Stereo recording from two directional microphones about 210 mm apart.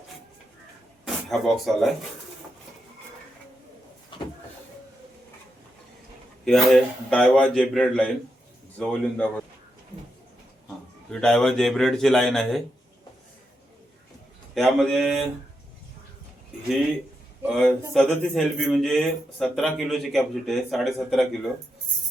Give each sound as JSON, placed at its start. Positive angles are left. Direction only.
{"t": 1.0, "sound": "speech", "side_deg": 0}
{"t": 4.1, "sound": "vehicle", "side_deg": 25}
{"t": 6.4, "sound": "speech", "side_deg": 0}
{"t": 11.1, "sound": "speech", "side_deg": 5}
{"t": 14.5, "sound": "speech", "side_deg": 0}
{"t": 17.4, "sound": "speech", "side_deg": 0}